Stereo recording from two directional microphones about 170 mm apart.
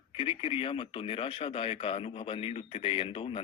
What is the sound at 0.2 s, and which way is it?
A man's voice, 30° left (ahead or behind).